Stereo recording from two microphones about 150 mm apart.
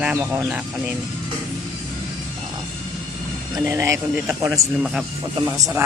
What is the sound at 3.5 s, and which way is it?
Speech, 20° right (ahead or behind).